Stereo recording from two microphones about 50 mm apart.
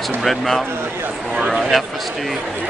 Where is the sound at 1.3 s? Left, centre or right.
Centre.